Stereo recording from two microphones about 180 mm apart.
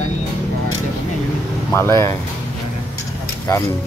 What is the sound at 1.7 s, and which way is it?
Speech, 15° left (ahead or behind).